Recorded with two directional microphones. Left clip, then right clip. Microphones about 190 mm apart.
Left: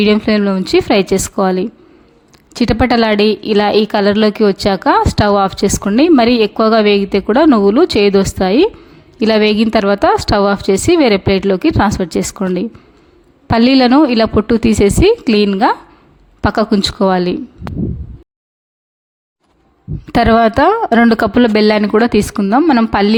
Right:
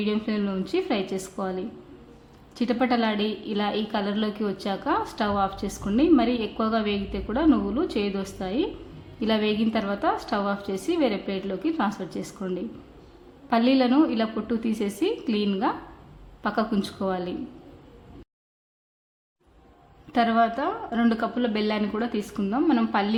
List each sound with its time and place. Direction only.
0.0 s a woman's voice: 45° left (ahead or behind)
13.5 s a woman's voice: 45° left (ahead or behind)
20.1 s a woman's voice: 50° left (ahead or behind)